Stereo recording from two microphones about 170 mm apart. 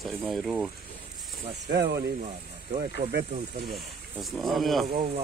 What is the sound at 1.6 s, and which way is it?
Speech, 80° right.